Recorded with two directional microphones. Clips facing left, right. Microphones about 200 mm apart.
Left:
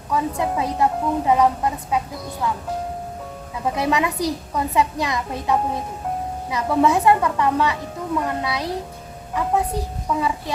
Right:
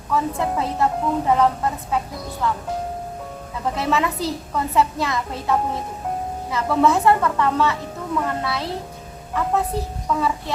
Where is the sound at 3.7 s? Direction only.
15° left (ahead or behind).